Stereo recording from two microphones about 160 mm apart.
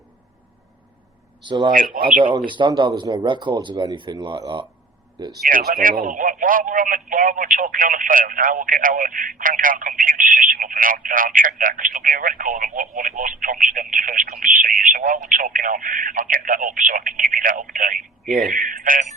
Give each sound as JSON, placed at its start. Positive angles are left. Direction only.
{"t": 1.5, "sound": "speech", "side_deg": -30}
{"t": 1.7, "sound": "speech", "side_deg": -60}
{"t": 2.5, "sound": "speech", "side_deg": -30}
{"t": 5.5, "sound": "speech", "side_deg": -60}
{"t": 18.3, "sound": "speech", "side_deg": 0}
{"t": 18.5, "sound": "speech", "side_deg": -55}